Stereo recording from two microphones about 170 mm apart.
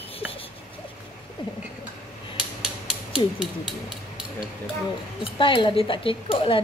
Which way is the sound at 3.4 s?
25° left (ahead or behind).